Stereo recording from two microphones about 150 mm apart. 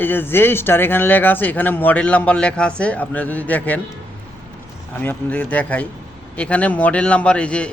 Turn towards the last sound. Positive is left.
turn(degrees=10)  # may be behind; listen again after turning